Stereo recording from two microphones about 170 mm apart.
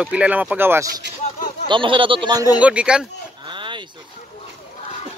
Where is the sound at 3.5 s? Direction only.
30° right (ahead or behind).